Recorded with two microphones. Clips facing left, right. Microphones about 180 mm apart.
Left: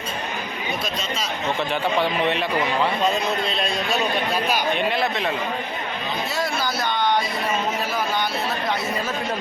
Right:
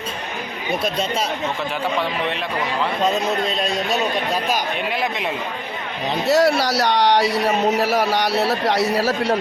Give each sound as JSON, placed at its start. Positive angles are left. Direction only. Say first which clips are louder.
{"t": 3.0, "sound": "a man's voice", "louder": "right 2 dB", "side_deg": -40}
{"t": 4.9, "sound": "a man's voice", "louder": "left 1 dB", "side_deg": -10}
{"t": 6.2, "sound": "a man's voice", "louder": "right 12 dB", "side_deg": -70}